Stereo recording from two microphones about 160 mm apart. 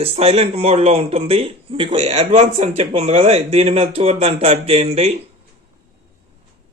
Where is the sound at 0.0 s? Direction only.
40° right (ahead or behind).